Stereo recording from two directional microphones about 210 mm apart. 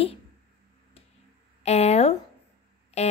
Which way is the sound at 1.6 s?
30° left (ahead or behind).